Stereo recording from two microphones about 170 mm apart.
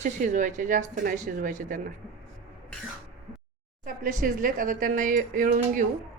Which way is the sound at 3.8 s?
50° right (ahead or behind).